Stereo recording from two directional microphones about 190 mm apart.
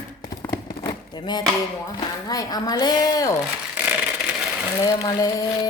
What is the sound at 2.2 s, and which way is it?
A woman's voice, 20° left (ahead or behind).